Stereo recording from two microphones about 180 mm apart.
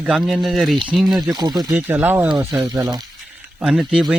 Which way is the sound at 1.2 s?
25° right (ahead or behind).